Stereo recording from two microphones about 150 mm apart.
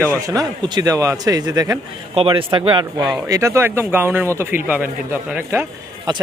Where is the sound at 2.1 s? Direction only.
35° right (ahead or behind).